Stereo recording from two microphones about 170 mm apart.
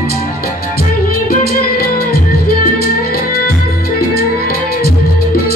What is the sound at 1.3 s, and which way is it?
Music, 60° left (ahead or behind).